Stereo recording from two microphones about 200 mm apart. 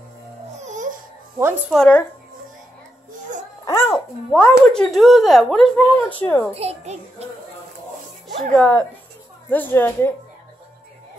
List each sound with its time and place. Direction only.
0.6 s babbling: 40° right (ahead or behind)
1.7 s speech: 5° left (ahead or behind)
3.6 s a child's voice: 10° left (ahead or behind)
3.9 s speech: centre (ahead or behind)
6.5 s a child's voice: 30° right (ahead or behind)
8.4 s a woman's voice: 5° left (ahead or behind)